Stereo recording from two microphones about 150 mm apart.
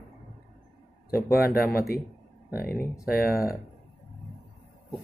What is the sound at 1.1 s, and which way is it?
Speech, 80° left.